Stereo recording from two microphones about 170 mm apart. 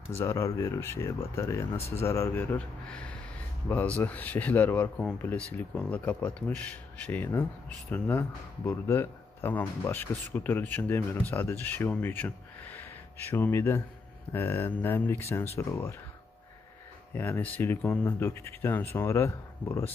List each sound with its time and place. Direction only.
0.2 s speech: 15° left (ahead or behind)
17.1 s speech: 10° left (ahead or behind)